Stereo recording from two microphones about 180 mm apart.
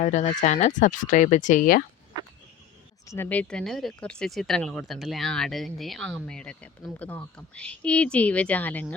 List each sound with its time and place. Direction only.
0.0 s speech: 40° left (ahead or behind)
3.1 s speech: 10° left (ahead or behind)